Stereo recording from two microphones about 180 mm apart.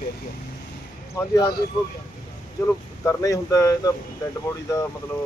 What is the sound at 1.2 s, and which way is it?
Speech, 20° left (ahead or behind).